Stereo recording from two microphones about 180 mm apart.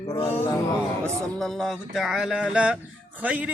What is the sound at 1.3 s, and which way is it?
A man's voice, centre (ahead or behind).